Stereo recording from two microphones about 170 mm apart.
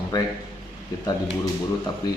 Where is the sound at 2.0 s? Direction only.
25° left (ahead or behind).